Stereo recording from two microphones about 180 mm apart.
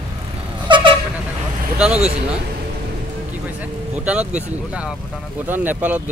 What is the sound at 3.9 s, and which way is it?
Speech, 10° right (ahead or behind).